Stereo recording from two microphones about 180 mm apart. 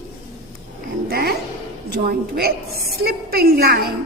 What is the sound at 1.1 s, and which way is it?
A woman's voice, 60° right (ahead or behind).